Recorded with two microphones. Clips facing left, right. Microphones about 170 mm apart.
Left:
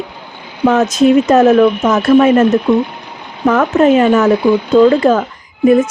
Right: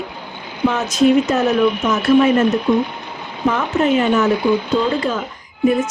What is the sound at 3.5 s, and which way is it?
Speech, 65° left (ahead or behind).